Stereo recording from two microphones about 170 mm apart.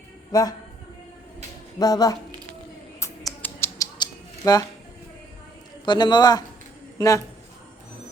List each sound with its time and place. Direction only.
0.3 s speech: 20° left (ahead or behind)
1.8 s a man's voice: 20° left (ahead or behind)
3.0 s bird: 15° left (ahead or behind)
3.9 s a sound: 25° left (ahead or behind)
5.8 s a man's voice: 25° left (ahead or behind)